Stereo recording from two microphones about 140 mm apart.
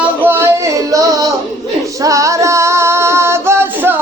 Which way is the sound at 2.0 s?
25° right (ahead or behind).